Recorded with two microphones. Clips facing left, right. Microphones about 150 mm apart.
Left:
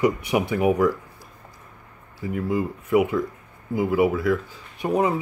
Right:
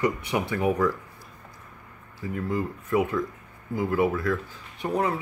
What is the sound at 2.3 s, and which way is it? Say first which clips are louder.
Speech: left 4 dB; 10° left (ahead or behind).